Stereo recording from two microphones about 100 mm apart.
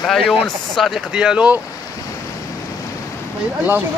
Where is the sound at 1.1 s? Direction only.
10° right (ahead or behind).